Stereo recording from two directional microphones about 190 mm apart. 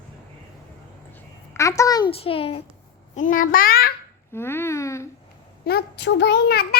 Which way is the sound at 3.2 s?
45° left (ahead or behind).